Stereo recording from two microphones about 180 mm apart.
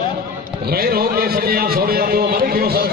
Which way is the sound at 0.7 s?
60° right (ahead or behind).